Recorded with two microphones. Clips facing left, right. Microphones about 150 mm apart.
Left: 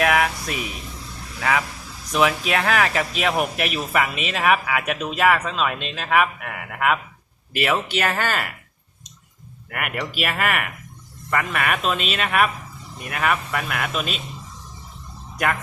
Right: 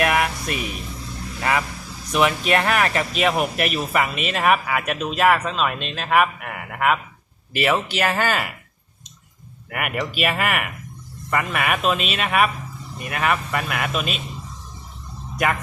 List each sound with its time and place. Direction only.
0.0 s a sound: centre (ahead or behind)
1.4 s speech: 5° right (ahead or behind)
9.6 s speech: centre (ahead or behind)